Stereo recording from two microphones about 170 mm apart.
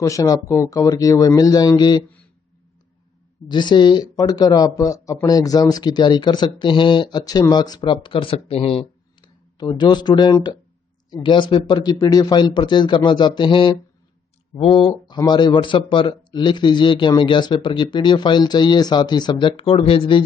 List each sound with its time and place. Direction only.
0.0 s speech: 20° left (ahead or behind)
3.4 s speech: 25° left (ahead or behind)